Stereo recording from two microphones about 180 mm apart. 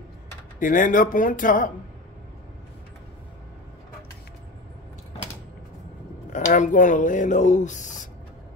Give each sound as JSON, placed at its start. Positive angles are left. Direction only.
{"t": 0.6, "sound": "speech", "side_deg": 45}
{"t": 6.3, "sound": "speech", "side_deg": 45}